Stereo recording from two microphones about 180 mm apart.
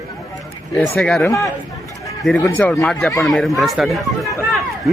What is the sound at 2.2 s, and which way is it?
Speech, 5° left (ahead or behind).